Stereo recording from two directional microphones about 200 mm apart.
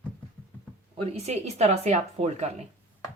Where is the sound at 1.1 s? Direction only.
35° right (ahead or behind).